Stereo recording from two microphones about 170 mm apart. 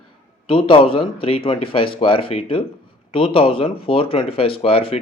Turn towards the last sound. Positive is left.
turn(degrees=35)  # may be behind; listen again after turning